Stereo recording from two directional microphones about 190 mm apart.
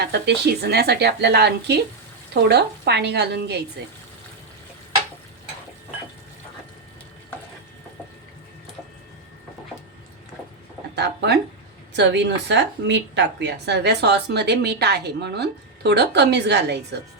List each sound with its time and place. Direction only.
0.0 s a woman's voice: 60° right (ahead or behind)
10.9 s a woman's voice: 60° right (ahead or behind)